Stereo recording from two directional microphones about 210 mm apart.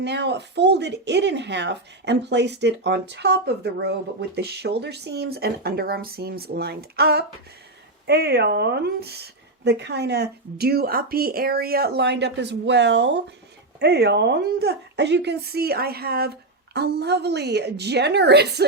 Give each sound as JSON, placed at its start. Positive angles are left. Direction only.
{"t": 0.0, "sound": "speech", "side_deg": -55}